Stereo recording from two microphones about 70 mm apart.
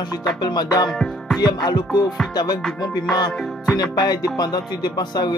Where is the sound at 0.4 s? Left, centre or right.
Left.